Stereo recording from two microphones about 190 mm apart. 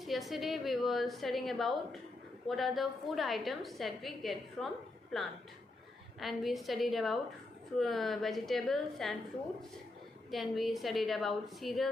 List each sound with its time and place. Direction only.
0.0 s a woman's voice: centre (ahead or behind)
10.3 s a woman's voice: centre (ahead or behind)